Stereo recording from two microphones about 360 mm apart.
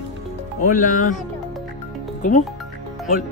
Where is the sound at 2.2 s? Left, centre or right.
Left.